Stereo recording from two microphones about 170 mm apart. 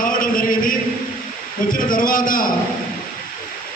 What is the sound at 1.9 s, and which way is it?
Speech, 55° left (ahead or behind).